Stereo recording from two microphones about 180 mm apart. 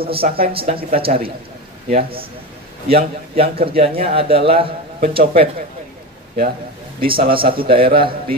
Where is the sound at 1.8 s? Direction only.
35° right (ahead or behind).